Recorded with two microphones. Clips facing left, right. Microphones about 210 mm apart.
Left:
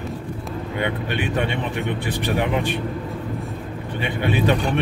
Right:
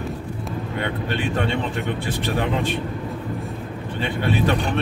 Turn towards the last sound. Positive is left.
turn(degrees=15)  # may be behind; listen again after turning